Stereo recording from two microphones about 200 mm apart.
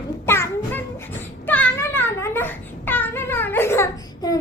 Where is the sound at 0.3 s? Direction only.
10° left (ahead or behind).